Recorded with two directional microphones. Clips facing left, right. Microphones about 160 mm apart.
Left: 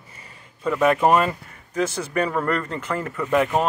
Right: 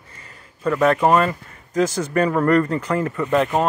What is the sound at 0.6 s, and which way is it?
A man's voice, 5° left (ahead or behind).